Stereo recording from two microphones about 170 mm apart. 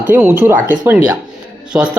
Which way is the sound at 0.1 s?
10° right (ahead or behind).